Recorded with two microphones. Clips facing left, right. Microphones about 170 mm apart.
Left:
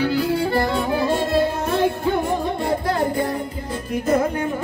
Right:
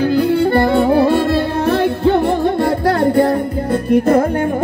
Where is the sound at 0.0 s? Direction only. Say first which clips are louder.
Right 7 dB; 50° right (ahead or behind).